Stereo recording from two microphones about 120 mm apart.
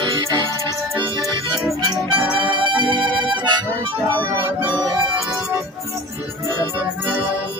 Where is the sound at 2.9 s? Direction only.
40° right (ahead or behind).